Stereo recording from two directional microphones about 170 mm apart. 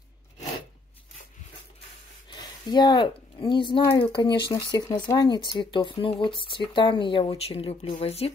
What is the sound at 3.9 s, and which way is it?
Speech, 30° left (ahead or behind).